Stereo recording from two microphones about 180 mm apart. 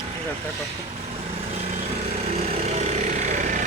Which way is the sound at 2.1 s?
35° right (ahead or behind).